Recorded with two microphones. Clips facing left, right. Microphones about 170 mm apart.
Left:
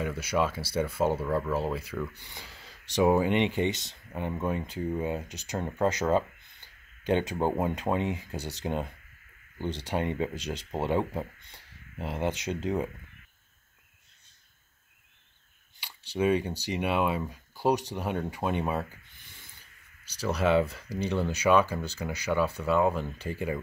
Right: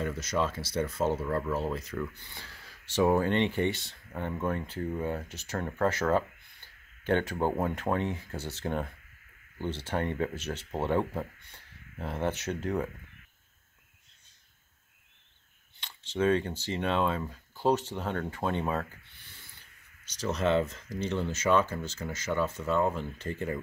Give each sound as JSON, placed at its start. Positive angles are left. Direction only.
{"t": 0.0, "sound": "speech", "side_deg": 10}
{"t": 15.8, "sound": "speech", "side_deg": 10}